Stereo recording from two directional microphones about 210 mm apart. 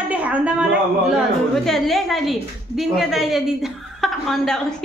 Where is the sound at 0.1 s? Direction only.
5° right (ahead or behind).